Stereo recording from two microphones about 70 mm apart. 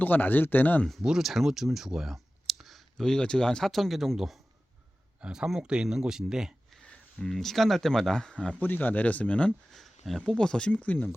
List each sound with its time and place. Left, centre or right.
0.0 s speech: left
1.0 s speech: centre
5.2 s speech: centre
6.9 s speech: centre
8.6 s speech: left
9.7 s a sound: centre
10.2 s speech: centre